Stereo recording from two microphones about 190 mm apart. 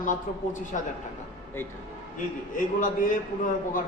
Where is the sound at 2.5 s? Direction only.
45° left (ahead or behind).